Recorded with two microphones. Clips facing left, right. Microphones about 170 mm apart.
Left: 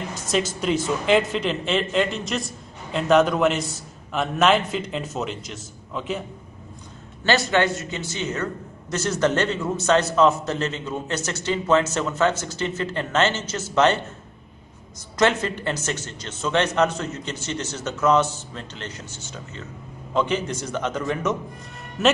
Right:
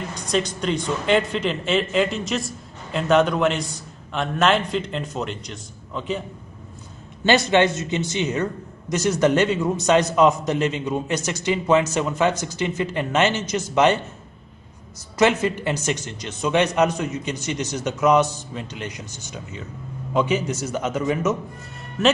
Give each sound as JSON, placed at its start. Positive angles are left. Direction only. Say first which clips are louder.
{"t": 0.1, "sound": "speech", "louder": "right 1 dB", "side_deg": 5}
{"t": 7.2, "sound": "a man's voice", "louder": "right 3 dB", "side_deg": -20}
{"t": 15.1, "sound": "a man's voice", "louder": "right 2 dB", "side_deg": -10}